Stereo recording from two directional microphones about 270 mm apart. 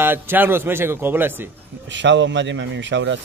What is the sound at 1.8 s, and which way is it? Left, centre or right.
Speech, right.